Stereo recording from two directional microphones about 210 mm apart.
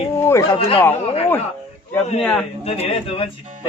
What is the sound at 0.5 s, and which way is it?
Speech, 25° left (ahead or behind).